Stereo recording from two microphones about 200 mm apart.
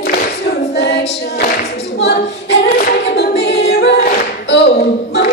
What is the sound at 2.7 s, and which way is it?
Hands, 50° left (ahead or behind).